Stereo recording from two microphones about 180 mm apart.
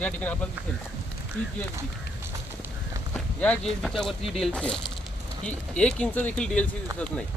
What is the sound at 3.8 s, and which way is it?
Speech, 5° left (ahead or behind).